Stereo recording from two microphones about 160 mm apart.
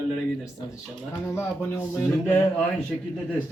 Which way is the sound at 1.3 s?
15° left (ahead or behind).